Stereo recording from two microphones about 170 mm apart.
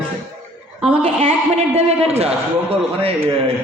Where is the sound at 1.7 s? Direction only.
35° right (ahead or behind).